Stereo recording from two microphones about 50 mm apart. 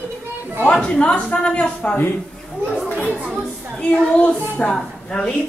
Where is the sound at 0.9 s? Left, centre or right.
Left.